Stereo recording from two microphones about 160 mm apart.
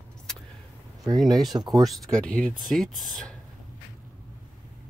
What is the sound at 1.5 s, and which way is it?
Speech, 25° right (ahead or behind).